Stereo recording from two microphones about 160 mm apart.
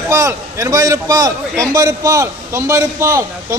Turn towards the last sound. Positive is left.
turn(degrees=-15)  # may be behind; listen again after turning